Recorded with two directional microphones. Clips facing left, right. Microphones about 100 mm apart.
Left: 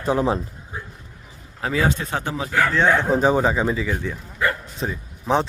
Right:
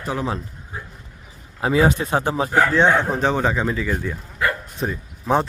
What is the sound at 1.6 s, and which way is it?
Speech, 20° right (ahead or behind).